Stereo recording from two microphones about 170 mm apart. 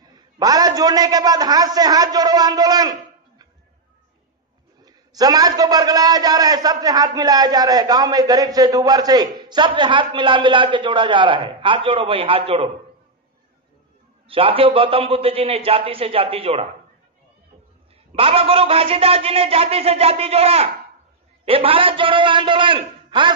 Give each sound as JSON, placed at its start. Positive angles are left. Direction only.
{"t": 0.1, "sound": "a man's voice", "side_deg": -20}
{"t": 4.8, "sound": "a man's voice", "side_deg": -20}
{"t": 14.2, "sound": "a man's voice", "side_deg": -35}
{"t": 18.1, "sound": "a man's voice", "side_deg": -35}